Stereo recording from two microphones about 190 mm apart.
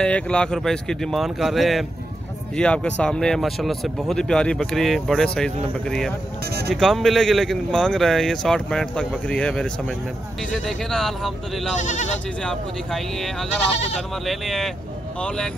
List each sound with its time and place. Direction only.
0.0 s speech: 5° left (ahead or behind)
11.7 s speech: 40° left (ahead or behind)
12.4 s speech: centre (ahead or behind)